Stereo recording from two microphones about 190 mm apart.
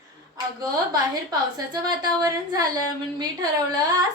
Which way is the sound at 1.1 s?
20° right (ahead or behind).